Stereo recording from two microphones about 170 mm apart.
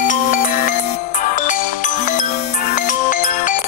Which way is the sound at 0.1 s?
50° left (ahead or behind).